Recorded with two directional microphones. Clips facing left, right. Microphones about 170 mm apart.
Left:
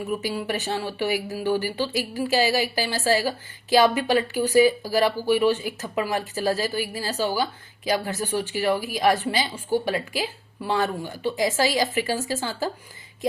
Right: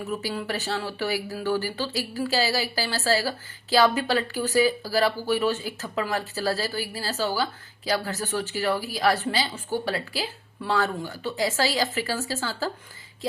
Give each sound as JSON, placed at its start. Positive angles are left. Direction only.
{"t": 0.2, "sound": "speech", "side_deg": 15}